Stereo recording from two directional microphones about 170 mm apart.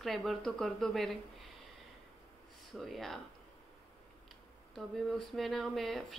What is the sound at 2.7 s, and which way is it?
Speech, centre (ahead or behind).